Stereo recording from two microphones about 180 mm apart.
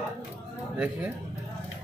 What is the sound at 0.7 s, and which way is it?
Speech, 5° right (ahead or behind).